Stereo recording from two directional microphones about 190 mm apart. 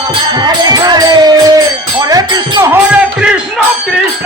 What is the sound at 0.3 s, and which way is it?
Music, 20° right (ahead or behind).